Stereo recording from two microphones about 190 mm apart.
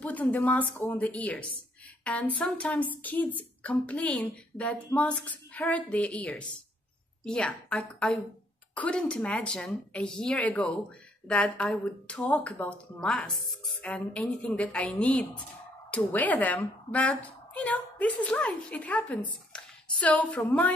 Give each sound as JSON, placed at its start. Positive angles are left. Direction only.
{"t": 0.0, "sound": "a woman's voice", "side_deg": 10}